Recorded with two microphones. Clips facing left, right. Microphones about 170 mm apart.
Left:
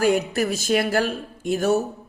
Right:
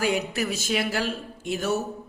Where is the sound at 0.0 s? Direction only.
45° left (ahead or behind).